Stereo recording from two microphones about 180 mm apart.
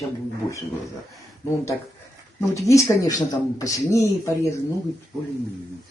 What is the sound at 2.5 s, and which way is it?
Speech, 15° left (ahead or behind).